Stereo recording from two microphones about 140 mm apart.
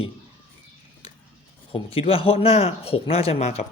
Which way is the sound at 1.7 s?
40° left (ahead or behind).